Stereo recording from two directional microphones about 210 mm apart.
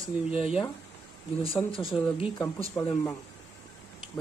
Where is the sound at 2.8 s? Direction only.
5° left (ahead or behind).